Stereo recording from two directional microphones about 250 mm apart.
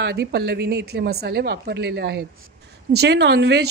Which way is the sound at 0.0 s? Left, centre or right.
Right.